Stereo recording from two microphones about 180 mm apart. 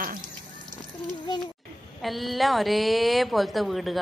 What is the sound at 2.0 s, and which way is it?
Speech, centre (ahead or behind).